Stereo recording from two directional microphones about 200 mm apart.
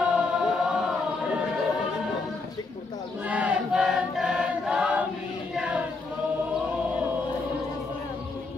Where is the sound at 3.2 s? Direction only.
5° right (ahead or behind).